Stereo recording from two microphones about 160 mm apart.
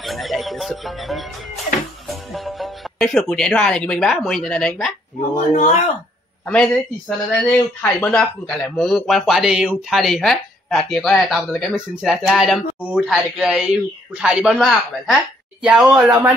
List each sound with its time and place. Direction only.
0.0 s speech: centre (ahead or behind)
5.5 s speech: 50° left (ahead or behind)
6.4 s speech: 5° left (ahead or behind)